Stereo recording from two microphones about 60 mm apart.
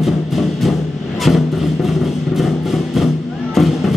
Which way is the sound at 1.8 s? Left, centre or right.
Centre.